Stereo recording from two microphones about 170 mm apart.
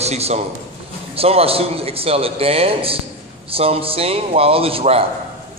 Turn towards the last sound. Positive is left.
turn(degrees=-35)  # may be behind; listen again after turning